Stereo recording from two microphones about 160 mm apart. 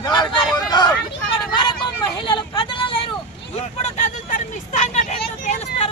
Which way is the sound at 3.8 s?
50° left (ahead or behind).